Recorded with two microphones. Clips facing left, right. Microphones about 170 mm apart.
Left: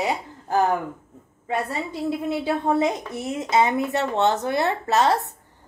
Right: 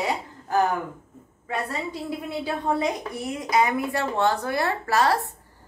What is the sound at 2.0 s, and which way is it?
A woman's voice, 25° left (ahead or behind).